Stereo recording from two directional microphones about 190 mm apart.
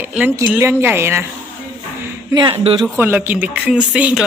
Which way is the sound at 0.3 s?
15° right (ahead or behind).